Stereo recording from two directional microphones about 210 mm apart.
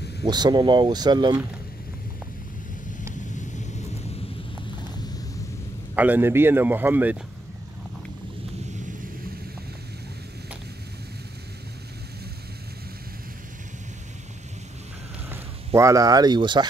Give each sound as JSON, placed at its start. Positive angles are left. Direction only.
{"t": 0.2, "sound": "speech", "side_deg": -20}
{"t": 5.9, "sound": "speech", "side_deg": -10}
{"t": 15.2, "sound": "speech", "side_deg": -10}